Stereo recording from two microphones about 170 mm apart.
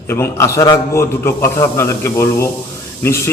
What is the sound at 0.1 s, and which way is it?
A man's voice, 15° left (ahead or behind).